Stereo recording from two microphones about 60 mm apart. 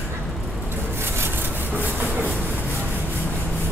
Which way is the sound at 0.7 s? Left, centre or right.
Right.